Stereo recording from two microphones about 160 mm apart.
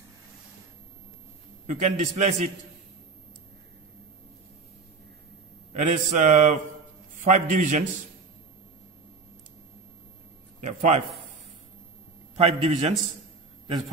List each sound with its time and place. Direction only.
1.7 s mantra: 45° right (ahead or behind)
5.7 s mantra: 50° right (ahead or behind)
10.6 s a man's voice: 45° right (ahead or behind)
12.4 s a man's voice: 40° right (ahead or behind)